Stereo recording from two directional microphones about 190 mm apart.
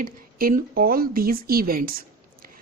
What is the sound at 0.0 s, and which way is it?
A woman's voice, 50° right (ahead or behind).